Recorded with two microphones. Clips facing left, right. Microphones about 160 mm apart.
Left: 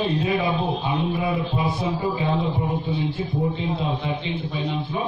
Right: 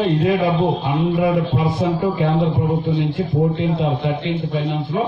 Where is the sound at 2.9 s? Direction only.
65° right (ahead or behind).